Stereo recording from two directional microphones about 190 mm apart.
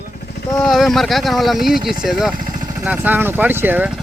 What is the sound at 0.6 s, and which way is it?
Speech, centre (ahead or behind).